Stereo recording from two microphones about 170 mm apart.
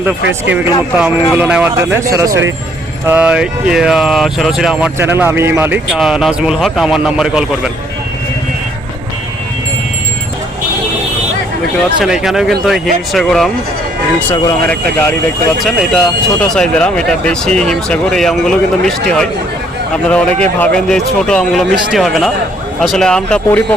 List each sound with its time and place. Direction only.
0.9 s speech: 5° right (ahead or behind)
3.1 s speech: 5° right (ahead or behind)
11.9 s speech: 5° right (ahead or behind)